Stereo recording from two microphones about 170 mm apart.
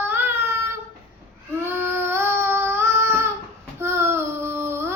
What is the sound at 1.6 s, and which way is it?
Child singing, 15° right (ahead or behind).